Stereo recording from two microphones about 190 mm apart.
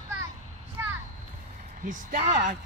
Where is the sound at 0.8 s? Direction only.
15° right (ahead or behind).